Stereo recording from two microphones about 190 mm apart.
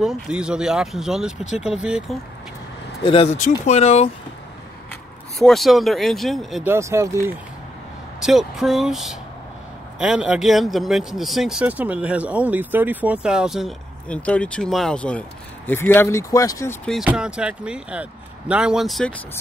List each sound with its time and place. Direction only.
0.0 s speech: 5° right (ahead or behind)
3.0 s speech: 30° left (ahead or behind)
3.3 s speech: 40° left (ahead or behind)
5.4 s speech: centre (ahead or behind)
6.7 s speech: 15° right (ahead or behind)
8.2 s speech: centre (ahead or behind); by 16.7 s 15° left (ahead or behind)
16.8 s speech: centre (ahead or behind)